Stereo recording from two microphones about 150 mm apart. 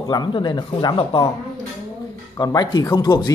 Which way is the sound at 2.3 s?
30° left (ahead or behind).